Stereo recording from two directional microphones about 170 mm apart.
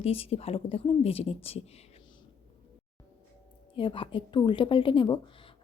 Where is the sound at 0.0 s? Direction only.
35° left (ahead or behind).